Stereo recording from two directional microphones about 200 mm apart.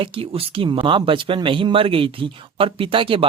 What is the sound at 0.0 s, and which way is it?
Speech, 25° right (ahead or behind).